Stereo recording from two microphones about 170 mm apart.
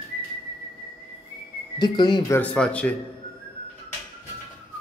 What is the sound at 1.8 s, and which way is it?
Speech, 25° left (ahead or behind).